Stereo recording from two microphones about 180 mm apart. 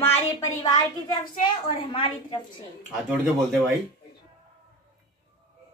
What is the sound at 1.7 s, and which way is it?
Speech, 30° left (ahead or behind).